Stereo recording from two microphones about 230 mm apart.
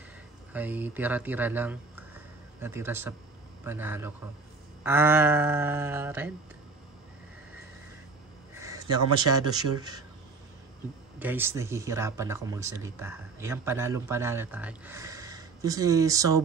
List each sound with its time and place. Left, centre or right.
0.5 s speech: centre
8.5 s a sound: centre
9.3 s speech: centre
11.1 s speech: centre